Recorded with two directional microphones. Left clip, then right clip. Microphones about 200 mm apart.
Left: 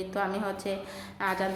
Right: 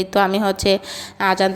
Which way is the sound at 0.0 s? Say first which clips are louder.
Right 13 dB; 40° right (ahead or behind).